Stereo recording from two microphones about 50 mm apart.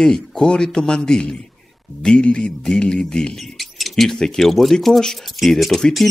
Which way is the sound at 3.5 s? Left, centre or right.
Centre.